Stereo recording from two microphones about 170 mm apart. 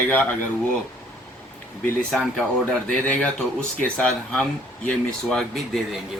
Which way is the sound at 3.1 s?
5° left (ahead or behind).